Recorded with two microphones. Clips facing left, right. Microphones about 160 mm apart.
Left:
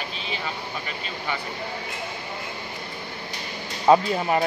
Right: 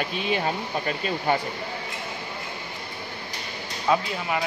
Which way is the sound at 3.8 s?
40° left (ahead or behind).